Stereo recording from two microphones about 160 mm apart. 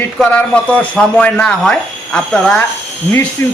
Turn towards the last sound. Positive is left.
turn(degrees=15)  # may be behind; listen again after turning